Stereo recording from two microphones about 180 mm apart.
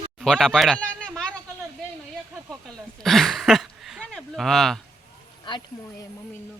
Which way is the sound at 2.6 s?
Centre (ahead or behind).